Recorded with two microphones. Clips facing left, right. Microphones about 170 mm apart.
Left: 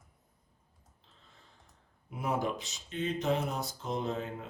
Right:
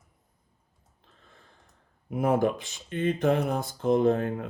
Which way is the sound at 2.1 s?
55° right (ahead or behind).